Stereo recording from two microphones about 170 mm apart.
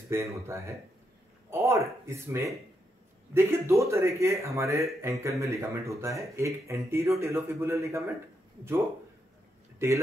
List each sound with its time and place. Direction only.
0.1 s speech: 15° right (ahead or behind)